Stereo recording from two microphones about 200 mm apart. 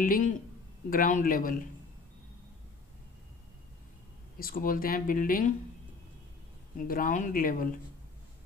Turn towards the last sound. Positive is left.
turn(degrees=45)  # may be behind; listen again after turning